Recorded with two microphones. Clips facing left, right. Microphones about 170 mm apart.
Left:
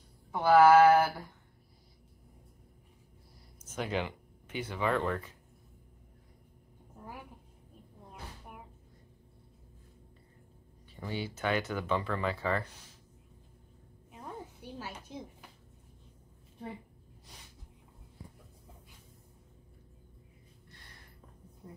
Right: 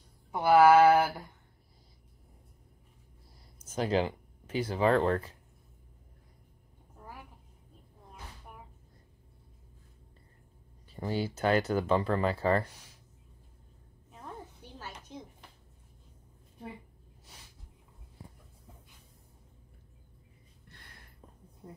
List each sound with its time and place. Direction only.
0.3 s mantra: 10° right (ahead or behind)
3.7 s speech: 35° right (ahead or behind)
11.0 s speech: 40° right (ahead or behind)
14.8 s a sound: 10° left (ahead or behind)